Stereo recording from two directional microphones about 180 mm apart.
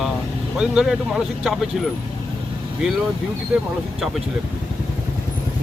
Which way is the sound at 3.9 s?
Centre (ahead or behind).